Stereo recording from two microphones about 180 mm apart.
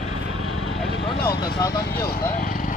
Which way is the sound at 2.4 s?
50° left (ahead or behind).